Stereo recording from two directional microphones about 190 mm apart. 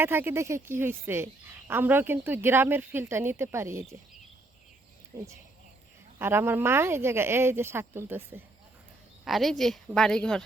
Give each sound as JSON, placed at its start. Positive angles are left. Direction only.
{"t": 0.0, "sound": "a woman's voice", "side_deg": -10}
{"t": 5.1, "sound": "a woman's voice", "side_deg": -15}
{"t": 9.2, "sound": "a woman's voice", "side_deg": 0}